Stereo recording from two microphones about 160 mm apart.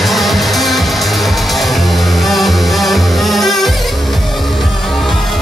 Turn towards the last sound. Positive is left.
turn(degrees=0)  # may be behind; listen again after turning